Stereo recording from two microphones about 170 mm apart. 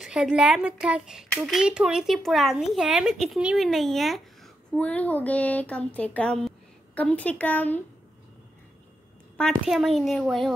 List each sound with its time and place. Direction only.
0.0 s a woman's voice: 5° right (ahead or behind); by 7.8 s 10° left (ahead or behind)
9.4 s speech: centre (ahead or behind)